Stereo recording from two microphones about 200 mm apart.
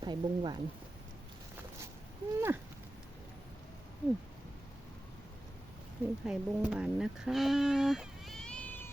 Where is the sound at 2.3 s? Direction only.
10° right (ahead or behind).